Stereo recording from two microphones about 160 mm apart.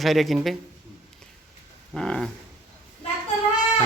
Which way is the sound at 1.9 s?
5° left (ahead or behind).